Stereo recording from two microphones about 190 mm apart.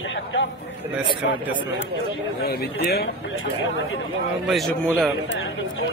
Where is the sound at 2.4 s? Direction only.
55° left (ahead or behind).